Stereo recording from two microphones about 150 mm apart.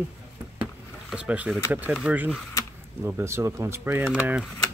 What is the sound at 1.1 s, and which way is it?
Speech, 10° right (ahead or behind).